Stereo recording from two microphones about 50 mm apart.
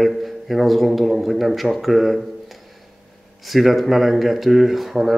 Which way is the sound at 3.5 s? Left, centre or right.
Centre.